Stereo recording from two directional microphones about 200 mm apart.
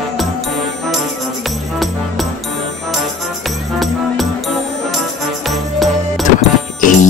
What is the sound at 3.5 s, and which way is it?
Music, centre (ahead or behind).